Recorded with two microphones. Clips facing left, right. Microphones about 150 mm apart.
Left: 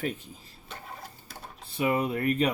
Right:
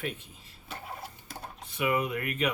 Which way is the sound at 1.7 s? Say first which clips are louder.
Left 2 dB; 30° left (ahead or behind).